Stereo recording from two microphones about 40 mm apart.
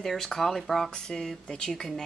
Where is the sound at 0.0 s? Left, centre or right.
Centre.